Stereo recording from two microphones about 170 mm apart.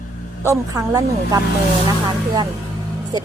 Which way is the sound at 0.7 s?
20° right (ahead or behind).